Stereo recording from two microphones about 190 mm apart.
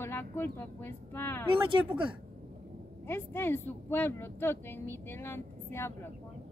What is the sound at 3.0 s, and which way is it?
Speech, 10° left (ahead or behind).